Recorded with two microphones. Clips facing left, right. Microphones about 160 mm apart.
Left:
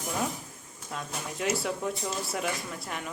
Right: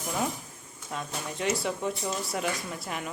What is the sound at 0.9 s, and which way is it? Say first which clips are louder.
Speech: right 1 dB; centre (ahead or behind).